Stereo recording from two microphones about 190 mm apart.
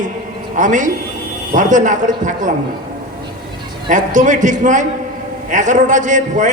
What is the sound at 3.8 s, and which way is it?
A man's voice, 40° right (ahead or behind).